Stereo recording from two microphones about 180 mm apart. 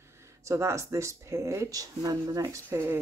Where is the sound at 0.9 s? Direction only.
15° right (ahead or behind).